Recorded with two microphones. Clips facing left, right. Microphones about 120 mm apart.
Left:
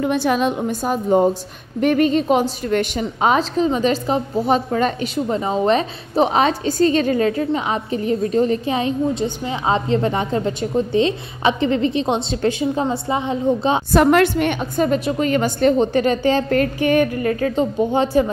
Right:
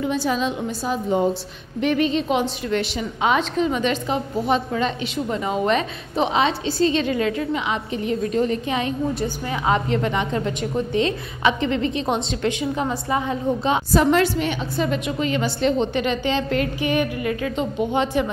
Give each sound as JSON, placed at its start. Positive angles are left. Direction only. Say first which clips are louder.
{"t": 0.0, "sound": "a woman's voice", "louder": "left 4 dB", "side_deg": 60}
{"t": 13.9, "sound": "a woman's voice", "louder": "left 4 dB", "side_deg": 60}